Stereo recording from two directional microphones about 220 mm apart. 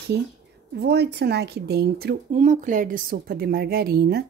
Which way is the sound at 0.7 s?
50° right (ahead or behind).